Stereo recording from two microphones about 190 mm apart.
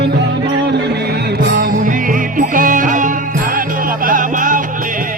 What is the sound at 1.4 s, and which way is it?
Music, 55° right (ahead or behind).